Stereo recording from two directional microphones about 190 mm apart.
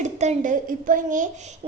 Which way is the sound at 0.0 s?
40° right (ahead or behind).